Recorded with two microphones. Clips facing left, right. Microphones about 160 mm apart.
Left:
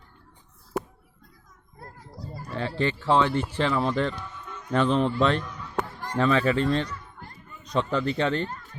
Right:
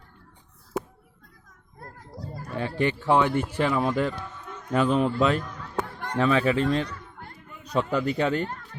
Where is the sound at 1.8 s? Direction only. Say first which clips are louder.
Right 2 dB; 50° right (ahead or behind).